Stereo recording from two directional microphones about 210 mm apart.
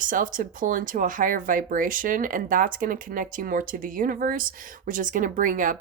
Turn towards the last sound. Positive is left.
turn(degrees=-40)  # may be behind; listen again after turning